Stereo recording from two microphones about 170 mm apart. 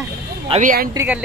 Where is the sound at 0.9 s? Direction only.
10° right (ahead or behind).